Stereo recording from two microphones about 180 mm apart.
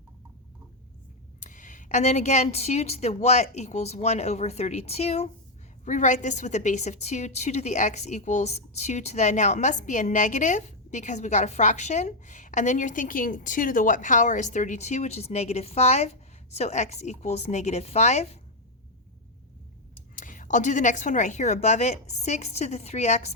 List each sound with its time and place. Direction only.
1.4 s a woman's voice: 45° left (ahead or behind)
20.1 s a woman's voice: 45° left (ahead or behind)